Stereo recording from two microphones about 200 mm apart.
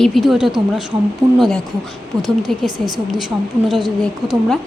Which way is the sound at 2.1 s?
20° right (ahead or behind).